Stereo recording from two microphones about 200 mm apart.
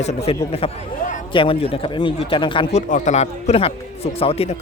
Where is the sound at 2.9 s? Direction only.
35° left (ahead or behind).